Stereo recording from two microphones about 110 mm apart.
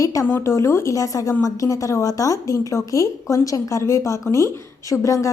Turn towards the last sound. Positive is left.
turn(degrees=30)  # may be behind; listen again after turning